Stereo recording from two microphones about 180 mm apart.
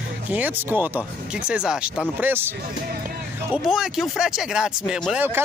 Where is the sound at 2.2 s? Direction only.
10° right (ahead or behind).